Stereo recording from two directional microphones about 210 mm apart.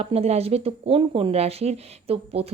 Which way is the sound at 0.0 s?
30° right (ahead or behind).